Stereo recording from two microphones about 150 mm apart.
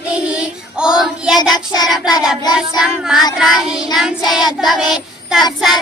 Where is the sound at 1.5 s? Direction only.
25° left (ahead or behind).